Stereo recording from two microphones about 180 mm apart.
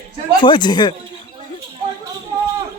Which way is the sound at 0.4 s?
25° left (ahead or behind).